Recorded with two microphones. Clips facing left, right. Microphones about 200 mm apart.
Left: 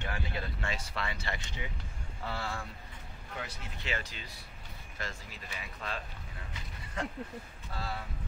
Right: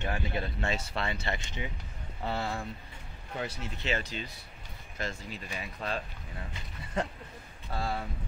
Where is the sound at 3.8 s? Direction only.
25° right (ahead or behind).